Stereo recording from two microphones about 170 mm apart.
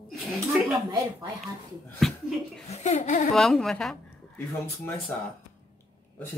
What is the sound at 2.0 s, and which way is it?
Speech, centre (ahead or behind).